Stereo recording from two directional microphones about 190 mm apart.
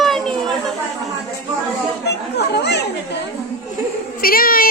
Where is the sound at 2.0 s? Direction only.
60° left (ahead or behind).